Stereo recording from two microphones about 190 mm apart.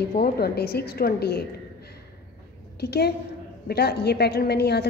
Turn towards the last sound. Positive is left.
turn(degrees=60)  # may be behind; listen again after turning